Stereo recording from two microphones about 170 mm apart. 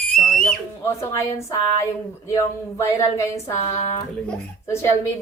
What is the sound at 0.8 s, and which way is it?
Speech, 15° left (ahead or behind).